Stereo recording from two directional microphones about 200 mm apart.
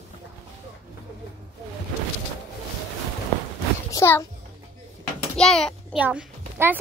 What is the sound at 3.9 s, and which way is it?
Speech, 15° left (ahead or behind).